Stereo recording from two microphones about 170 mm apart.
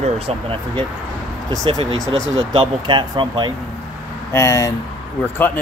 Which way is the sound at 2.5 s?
30° right (ahead or behind).